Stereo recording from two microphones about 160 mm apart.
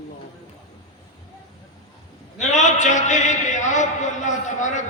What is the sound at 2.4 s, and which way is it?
Speech, 50° left (ahead or behind).